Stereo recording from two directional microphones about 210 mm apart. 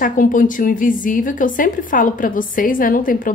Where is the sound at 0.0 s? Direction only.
40° left (ahead or behind).